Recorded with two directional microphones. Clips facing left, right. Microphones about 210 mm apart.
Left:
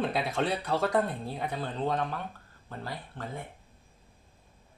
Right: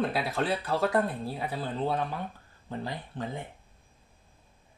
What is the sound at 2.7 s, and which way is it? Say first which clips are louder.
Speech: right 4 dB; 15° right (ahead or behind).